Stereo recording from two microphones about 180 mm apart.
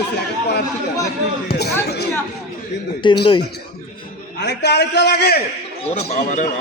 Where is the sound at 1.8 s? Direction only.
65° left (ahead or behind).